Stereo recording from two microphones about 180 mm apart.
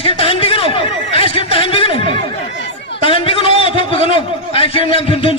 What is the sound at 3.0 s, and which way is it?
A man's voice, 30° left (ahead or behind).